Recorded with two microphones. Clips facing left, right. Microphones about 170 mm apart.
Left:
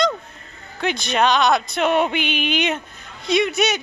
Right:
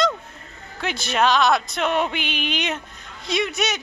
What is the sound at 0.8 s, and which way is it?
Speech, 5° right (ahead or behind).